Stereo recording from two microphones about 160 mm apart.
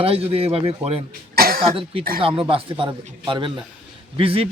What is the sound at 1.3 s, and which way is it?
Cough, 70° right (ahead or behind).